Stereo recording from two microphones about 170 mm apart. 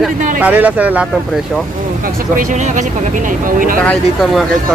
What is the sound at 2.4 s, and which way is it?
Speech, 45° right (ahead or behind).